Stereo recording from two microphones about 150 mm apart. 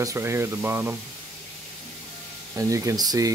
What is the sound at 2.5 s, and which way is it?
Speech, 20° right (ahead or behind).